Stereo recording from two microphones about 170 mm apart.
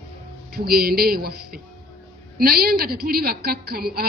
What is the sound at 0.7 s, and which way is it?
A woman's voice, 60° right (ahead or behind).